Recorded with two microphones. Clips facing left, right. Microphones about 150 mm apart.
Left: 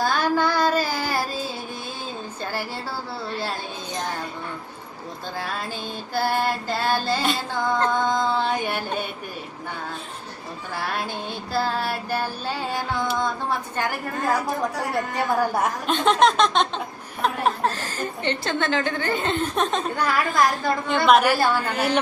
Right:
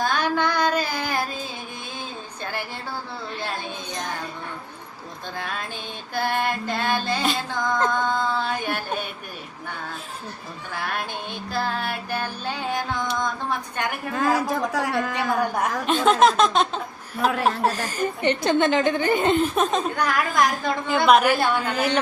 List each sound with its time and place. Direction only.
0.0 s carnatic music: 5° left (ahead or behind)
2.4 s a sound: 5° left (ahead or behind)
6.1 s music: 5° left (ahead or behind)
11.5 s music: 5° left (ahead or behind)
14.2 s a woman's voice: 90° right
15.3 s a woman's voice: 5° left (ahead or behind); by 19.4 s 15° right (ahead or behind)
19.5 s a woman's voice: centre (ahead or behind)